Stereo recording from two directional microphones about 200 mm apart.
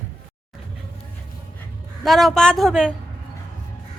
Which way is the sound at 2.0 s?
Centre (ahead or behind).